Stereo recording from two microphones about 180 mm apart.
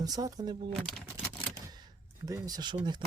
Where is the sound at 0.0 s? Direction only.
20° right (ahead or behind).